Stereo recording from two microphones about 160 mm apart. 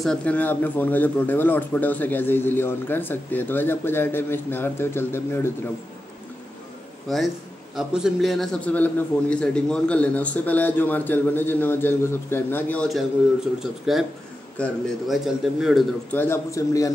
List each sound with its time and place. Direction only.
0.0 s a man's voice: 5° left (ahead or behind)
7.1 s a man's voice: centre (ahead or behind)
16.1 s a man's voice: 15° left (ahead or behind)